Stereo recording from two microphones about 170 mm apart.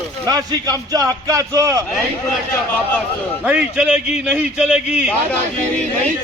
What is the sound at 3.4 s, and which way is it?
A man's voice, 5° right (ahead or behind).